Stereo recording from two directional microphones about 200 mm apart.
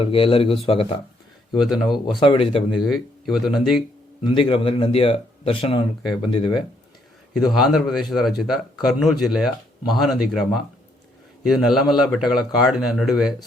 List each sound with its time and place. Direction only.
0.0 s a man's voice: 25° left (ahead or behind)
1.5 s speech: centre (ahead or behind)
2.1 s a man's voice: 25° left (ahead or behind)
2.8 s speech: centre (ahead or behind)
4.2 s a man's voice: 25° left (ahead or behind)
7.3 s speech: centre (ahead or behind)